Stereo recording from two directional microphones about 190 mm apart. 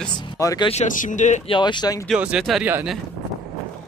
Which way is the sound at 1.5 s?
25° left (ahead or behind).